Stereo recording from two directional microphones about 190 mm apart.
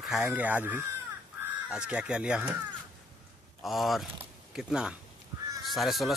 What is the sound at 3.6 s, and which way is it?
Speech, centre (ahead or behind).